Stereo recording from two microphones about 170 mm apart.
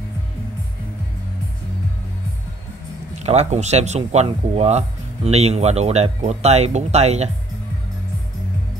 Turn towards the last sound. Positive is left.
turn(degrees=-40)  # may be behind; listen again after turning